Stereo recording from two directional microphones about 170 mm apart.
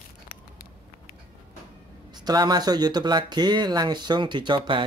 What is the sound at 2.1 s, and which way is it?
Speech, 25° right (ahead or behind).